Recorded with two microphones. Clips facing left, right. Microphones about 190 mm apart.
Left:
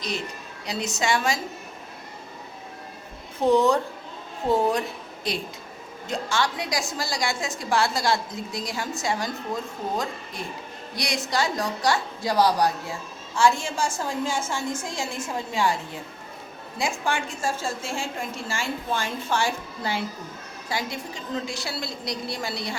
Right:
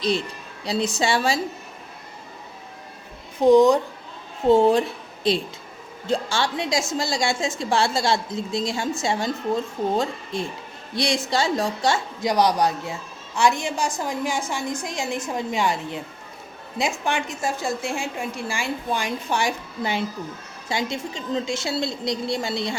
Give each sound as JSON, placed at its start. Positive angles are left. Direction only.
{"t": 0.6, "sound": "a woman's voice", "side_deg": -30}
{"t": 3.4, "sound": "a woman's voice", "side_deg": -15}
{"t": 4.4, "sound": "a woman's voice", "side_deg": -30}
{"t": 10.3, "sound": "a woman's voice", "side_deg": -25}